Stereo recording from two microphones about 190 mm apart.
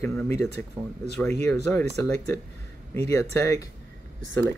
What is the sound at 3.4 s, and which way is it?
Speech, 15° left (ahead or behind).